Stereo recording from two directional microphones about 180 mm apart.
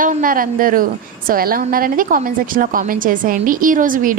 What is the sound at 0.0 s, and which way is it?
A woman's voice, 50° right (ahead or behind).